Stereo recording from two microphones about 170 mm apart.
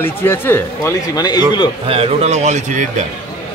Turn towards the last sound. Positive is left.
turn(degrees=-45)  # may be behind; listen again after turning